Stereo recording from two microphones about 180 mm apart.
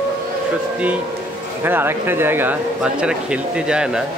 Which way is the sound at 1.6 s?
10° right (ahead or behind).